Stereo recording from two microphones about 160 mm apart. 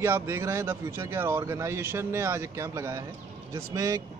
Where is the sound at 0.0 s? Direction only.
15° right (ahead or behind).